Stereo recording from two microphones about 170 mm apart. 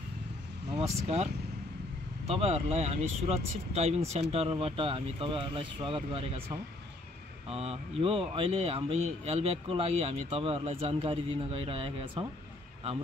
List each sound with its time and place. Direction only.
0.7 s speech: 35° right (ahead or behind)